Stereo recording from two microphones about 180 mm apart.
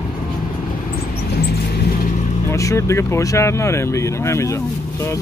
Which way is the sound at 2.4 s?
15° left (ahead or behind).